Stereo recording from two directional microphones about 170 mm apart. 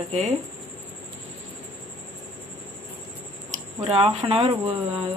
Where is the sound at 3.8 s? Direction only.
40° right (ahead or behind).